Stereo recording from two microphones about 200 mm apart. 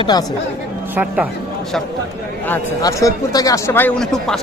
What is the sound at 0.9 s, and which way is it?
Speech, 10° right (ahead or behind).